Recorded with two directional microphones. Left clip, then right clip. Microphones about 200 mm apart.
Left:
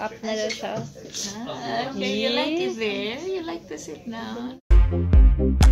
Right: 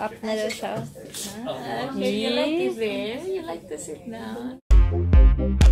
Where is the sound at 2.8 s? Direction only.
45° left (ahead or behind).